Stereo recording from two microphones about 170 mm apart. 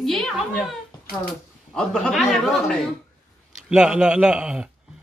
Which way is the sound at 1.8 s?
Centre (ahead or behind).